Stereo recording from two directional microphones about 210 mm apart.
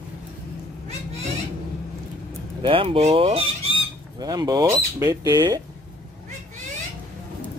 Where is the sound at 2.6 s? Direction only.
25° right (ahead or behind).